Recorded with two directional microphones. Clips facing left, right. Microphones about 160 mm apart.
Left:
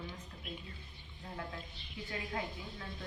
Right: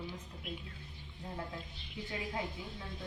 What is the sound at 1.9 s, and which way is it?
Speech, 20° right (ahead or behind).